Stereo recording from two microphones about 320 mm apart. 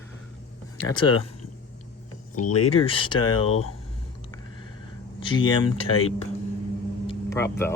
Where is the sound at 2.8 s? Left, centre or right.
Centre.